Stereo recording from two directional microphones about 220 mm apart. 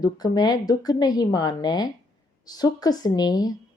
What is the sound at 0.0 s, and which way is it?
Speech, 20° left (ahead or behind).